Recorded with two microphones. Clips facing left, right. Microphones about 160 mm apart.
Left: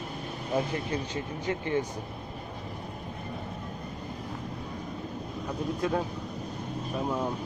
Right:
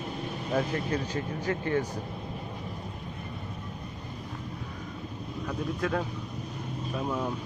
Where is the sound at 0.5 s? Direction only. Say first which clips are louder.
Right 1 dB; 20° left (ahead or behind).